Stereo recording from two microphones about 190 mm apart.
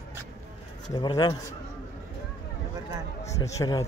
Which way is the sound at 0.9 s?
20° left (ahead or behind).